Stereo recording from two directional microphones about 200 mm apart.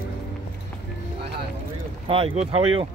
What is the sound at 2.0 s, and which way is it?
Speech, 25° right (ahead or behind).